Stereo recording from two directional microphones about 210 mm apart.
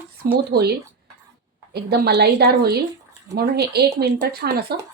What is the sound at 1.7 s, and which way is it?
A woman's voice, 50° right (ahead or behind).